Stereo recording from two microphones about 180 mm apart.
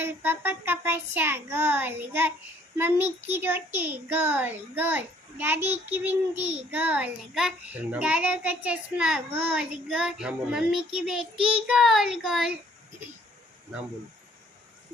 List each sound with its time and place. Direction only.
0.0 s a child's voice: 10° right (ahead or behind)